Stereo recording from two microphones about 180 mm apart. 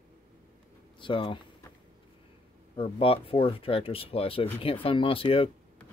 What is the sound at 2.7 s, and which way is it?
Speech, 30° left (ahead or behind).